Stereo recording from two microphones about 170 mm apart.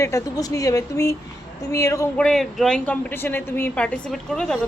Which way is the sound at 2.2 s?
Centre (ahead or behind).